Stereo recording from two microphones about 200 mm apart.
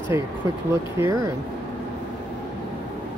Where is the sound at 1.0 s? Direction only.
15° right (ahead or behind).